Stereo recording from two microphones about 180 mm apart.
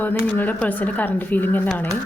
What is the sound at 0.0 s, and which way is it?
Speech, 10° left (ahead or behind).